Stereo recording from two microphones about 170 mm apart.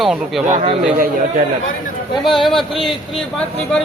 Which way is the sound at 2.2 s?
Centre (ahead or behind).